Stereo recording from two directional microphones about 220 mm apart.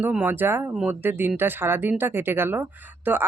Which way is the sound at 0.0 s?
10° right (ahead or behind).